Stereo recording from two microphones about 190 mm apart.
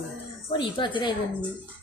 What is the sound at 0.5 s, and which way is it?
Speech, 25° left (ahead or behind).